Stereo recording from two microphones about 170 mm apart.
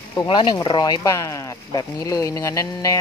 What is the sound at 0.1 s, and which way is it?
Speech, 25° left (ahead or behind).